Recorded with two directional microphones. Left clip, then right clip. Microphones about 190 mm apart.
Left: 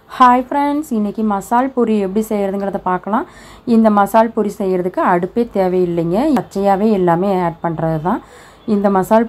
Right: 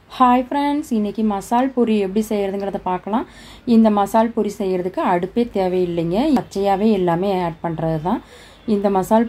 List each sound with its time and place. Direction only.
0.1 s a woman's voice: 10° left (ahead or behind)